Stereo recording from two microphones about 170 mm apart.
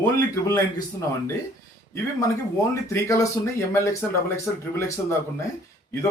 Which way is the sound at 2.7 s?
15° left (ahead or behind).